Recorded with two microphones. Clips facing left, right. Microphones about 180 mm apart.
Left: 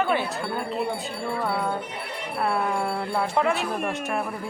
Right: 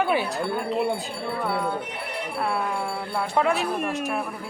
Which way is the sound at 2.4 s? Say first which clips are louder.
Left 3 dB; centre (ahead or behind).